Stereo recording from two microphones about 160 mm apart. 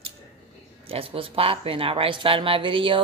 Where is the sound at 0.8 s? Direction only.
35° right (ahead or behind).